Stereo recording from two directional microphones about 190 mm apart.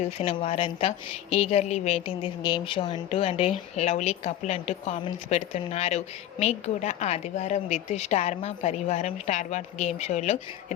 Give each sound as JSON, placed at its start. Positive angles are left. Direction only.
{"t": 0.2, "sound": "a woman's voice", "side_deg": 30}